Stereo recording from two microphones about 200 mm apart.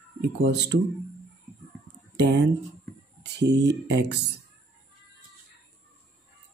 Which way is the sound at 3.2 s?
60° right (ahead or behind).